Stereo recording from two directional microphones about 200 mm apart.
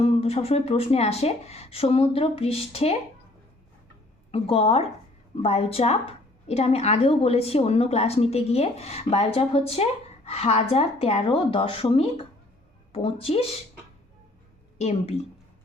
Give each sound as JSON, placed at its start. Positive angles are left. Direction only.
{"t": 0.0, "sound": "a woman's voice", "side_deg": 30}
{"t": 4.3, "sound": "a woman's voice", "side_deg": 30}
{"t": 14.8, "sound": "a woman's voice", "side_deg": 30}